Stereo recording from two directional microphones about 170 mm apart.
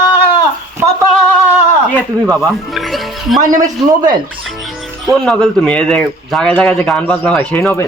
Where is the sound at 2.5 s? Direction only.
Centre (ahead or behind).